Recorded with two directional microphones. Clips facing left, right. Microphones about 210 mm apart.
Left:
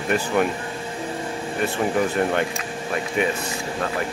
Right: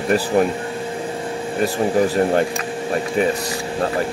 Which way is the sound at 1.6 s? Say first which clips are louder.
Right 4 dB; 35° right (ahead or behind).